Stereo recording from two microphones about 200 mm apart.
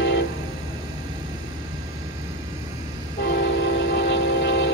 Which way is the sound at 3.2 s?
60° left (ahead or behind).